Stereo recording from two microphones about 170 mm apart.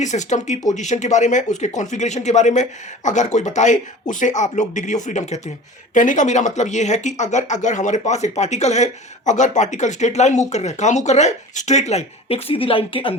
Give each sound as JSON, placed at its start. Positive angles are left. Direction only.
{"t": 0.0, "sound": "speech", "side_deg": 45}